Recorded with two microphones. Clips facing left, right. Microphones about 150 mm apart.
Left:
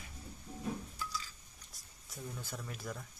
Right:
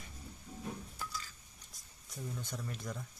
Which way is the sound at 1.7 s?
Centre (ahead or behind).